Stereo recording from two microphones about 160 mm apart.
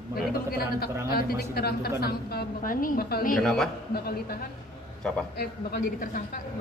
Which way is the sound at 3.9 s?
75° left (ahead or behind).